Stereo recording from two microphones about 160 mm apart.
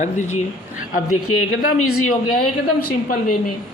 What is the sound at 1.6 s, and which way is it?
Speech, 60° left (ahead or behind).